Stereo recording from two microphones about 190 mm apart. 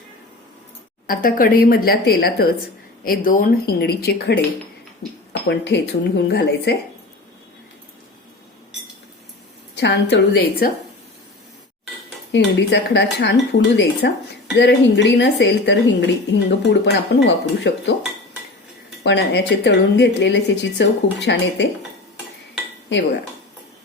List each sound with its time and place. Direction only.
1.0 s a woman's voice: 45° left (ahead or behind)
9.7 s a woman's voice: 65° left (ahead or behind)
12.3 s a woman's voice: 65° left (ahead or behind)
19.0 s a woman's voice: 70° left (ahead or behind)